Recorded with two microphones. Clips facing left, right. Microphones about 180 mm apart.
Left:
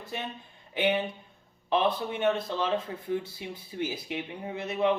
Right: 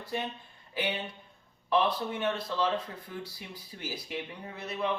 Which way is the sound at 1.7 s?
25° left (ahead or behind).